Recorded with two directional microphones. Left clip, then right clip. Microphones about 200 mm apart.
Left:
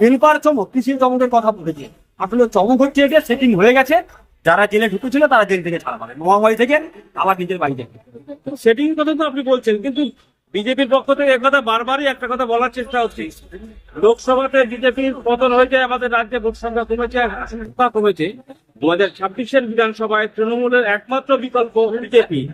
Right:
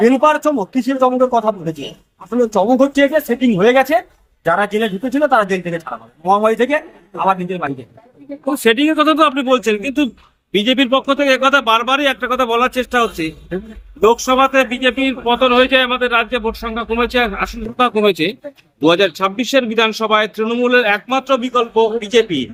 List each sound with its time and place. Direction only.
0.0 s a man's voice: centre (ahead or behind)
8.6 s speech: 55° right (ahead or behind)